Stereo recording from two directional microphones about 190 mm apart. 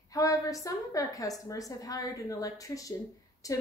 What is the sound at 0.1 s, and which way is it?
A woman's voice, 15° left (ahead or behind).